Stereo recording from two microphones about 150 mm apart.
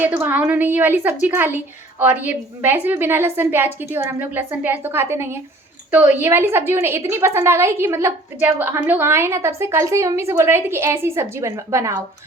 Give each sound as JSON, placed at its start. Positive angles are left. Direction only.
{"t": 0.0, "sound": "a woman's voice", "side_deg": -10}